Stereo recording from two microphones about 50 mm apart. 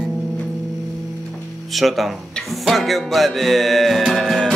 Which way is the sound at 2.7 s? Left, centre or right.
Centre.